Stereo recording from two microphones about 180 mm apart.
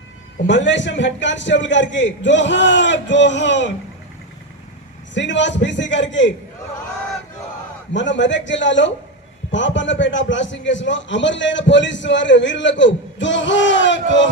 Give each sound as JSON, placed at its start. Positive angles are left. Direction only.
{"t": 0.4, "sound": "a man's voice", "side_deg": 85}
{"t": 5.1, "sound": "a man's voice", "side_deg": 90}
{"t": 7.9, "sound": "a man's voice", "side_deg": 90}